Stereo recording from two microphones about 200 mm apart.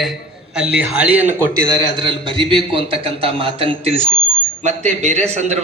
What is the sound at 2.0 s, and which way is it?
A man's voice, 25° right (ahead or behind).